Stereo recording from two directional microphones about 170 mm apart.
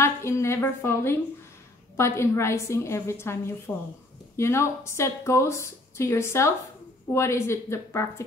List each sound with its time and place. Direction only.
0.0 s a woman's voice: 15° left (ahead or behind)